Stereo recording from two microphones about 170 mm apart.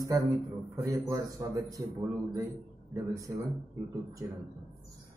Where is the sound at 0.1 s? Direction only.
20° right (ahead or behind).